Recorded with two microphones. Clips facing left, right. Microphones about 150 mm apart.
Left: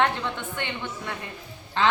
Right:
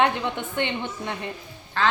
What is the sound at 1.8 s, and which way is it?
Speech, 20° left (ahead or behind).